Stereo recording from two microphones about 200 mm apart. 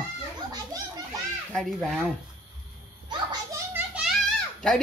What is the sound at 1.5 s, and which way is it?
Speech, centre (ahead or behind).